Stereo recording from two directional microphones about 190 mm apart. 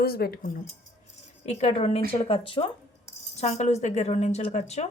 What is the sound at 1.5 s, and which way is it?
A woman's voice, 35° left (ahead or behind).